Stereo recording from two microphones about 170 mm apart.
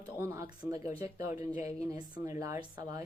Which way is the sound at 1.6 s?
40° left (ahead or behind).